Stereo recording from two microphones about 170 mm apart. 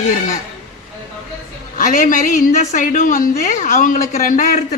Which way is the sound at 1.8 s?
50° left (ahead or behind).